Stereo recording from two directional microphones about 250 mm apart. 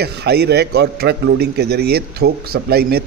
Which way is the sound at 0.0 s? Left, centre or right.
Right.